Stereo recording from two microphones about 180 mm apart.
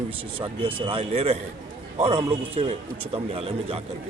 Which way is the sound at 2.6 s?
35° right (ahead or behind).